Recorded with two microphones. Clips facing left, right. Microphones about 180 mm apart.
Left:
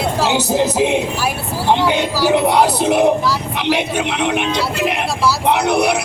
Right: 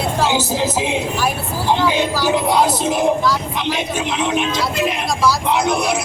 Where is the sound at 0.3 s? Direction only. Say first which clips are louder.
Left 4 dB; 65° left (ahead or behind).